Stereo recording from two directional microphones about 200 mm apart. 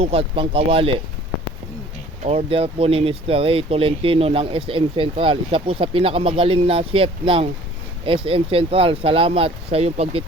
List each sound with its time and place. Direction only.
0.0 s speech: 30° right (ahead or behind)
2.2 s speech: 30° right (ahead or behind)